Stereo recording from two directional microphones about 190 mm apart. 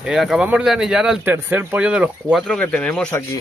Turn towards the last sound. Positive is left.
turn(degrees=10)  # may be behind; listen again after turning